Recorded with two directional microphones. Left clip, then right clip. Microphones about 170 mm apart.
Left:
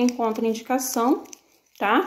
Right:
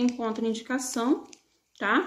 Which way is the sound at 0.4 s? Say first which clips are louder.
Left 6 dB; 20° right (ahead or behind).